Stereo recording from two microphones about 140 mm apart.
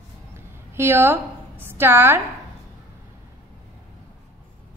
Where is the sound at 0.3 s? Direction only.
15° right (ahead or behind).